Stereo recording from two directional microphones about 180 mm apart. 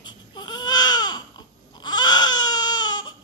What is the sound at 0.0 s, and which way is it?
Baby cry, 25° left (ahead or behind).